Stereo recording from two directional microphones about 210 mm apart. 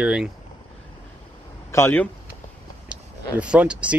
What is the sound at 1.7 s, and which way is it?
Speech, 10° left (ahead or behind).